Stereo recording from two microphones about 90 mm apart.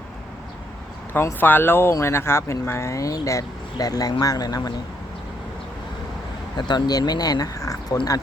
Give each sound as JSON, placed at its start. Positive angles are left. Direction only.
{"t": 1.1, "sound": "speech", "side_deg": 20}
{"t": 6.6, "sound": "speech", "side_deg": 55}